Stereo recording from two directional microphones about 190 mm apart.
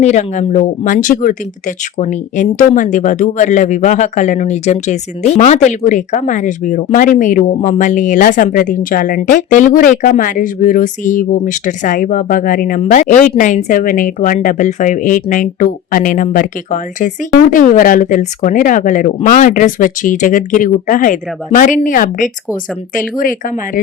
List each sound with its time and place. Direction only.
0.0 s speech: 40° left (ahead or behind)